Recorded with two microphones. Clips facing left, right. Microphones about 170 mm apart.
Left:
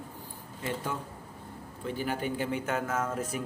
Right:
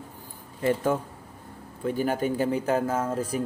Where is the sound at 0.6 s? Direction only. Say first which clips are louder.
Right 10 dB; 50° right (ahead or behind).